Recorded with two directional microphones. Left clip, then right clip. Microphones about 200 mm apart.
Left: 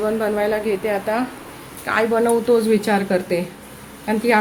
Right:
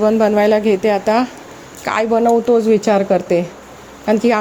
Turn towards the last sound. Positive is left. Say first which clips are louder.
# right 4 dB
turn(degrees=-35)  # may be behind; listen again after turning